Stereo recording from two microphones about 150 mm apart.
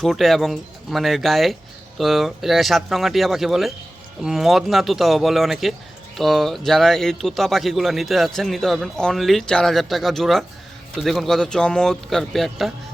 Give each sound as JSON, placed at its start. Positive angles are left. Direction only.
{"t": 0.0, "sound": "a man's voice", "side_deg": 0}